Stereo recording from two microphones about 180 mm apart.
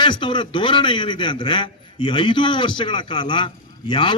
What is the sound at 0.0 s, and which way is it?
A man's voice, 25° left (ahead or behind).